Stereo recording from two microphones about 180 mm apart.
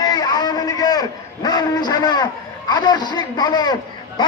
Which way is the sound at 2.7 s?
25° left (ahead or behind).